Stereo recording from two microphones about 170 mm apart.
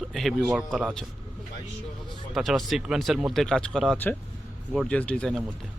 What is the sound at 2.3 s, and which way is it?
Speech, centre (ahead or behind).